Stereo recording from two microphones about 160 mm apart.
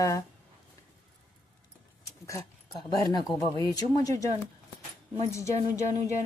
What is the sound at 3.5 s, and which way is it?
Speech, 30° right (ahead or behind).